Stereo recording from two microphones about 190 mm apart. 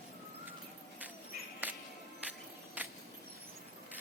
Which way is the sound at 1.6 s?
5° right (ahead or behind).